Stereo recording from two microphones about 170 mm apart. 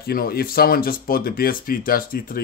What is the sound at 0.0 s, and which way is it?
Speech, 65° left (ahead or behind).